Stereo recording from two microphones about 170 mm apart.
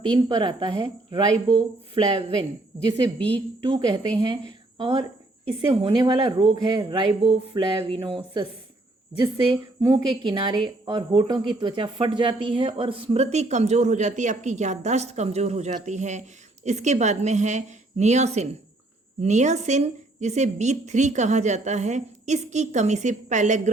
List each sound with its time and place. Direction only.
0.0 s speech: 30° right (ahead or behind)
3.2 s a woman's voice: 30° right (ahead or behind); by 23.7 s 45° right (ahead or behind)